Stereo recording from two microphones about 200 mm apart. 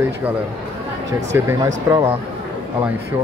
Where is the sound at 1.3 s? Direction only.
15° right (ahead or behind).